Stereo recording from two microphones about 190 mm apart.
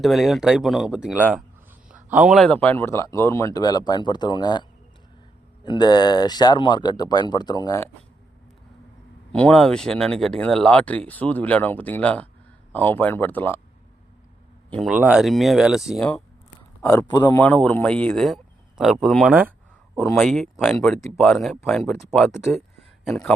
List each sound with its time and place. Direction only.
0.0 s speech: centre (ahead or behind); by 4.6 s 20° left (ahead or behind)
5.6 s speech: 25° left (ahead or behind)
9.3 s speech: 5° left (ahead or behind)
14.7 s speech: centre (ahead or behind)
16.8 s speech: 15° left (ahead or behind)